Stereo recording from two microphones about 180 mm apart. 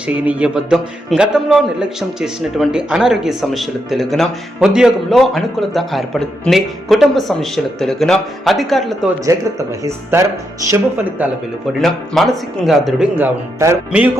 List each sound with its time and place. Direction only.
0.1 s a man's voice: 5° right (ahead or behind)
9.2 s speech: 15° right (ahead or behind)
11.8 s a man's voice: centre (ahead or behind)